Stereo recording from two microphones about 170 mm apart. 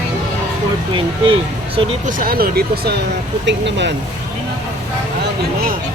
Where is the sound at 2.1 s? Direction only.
60° right (ahead or behind).